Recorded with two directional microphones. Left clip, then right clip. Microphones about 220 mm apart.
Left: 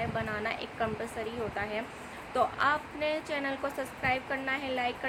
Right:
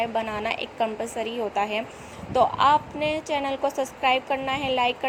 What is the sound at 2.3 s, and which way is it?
A woman's voice, 20° right (ahead or behind).